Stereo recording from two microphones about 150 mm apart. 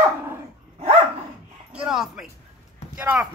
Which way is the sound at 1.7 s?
5° right (ahead or behind).